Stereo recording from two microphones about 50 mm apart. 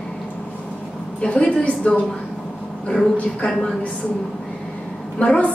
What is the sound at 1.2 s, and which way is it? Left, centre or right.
Speech, left.